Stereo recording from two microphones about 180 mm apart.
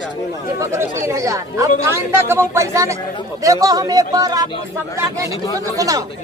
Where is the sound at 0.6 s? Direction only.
15° right (ahead or behind).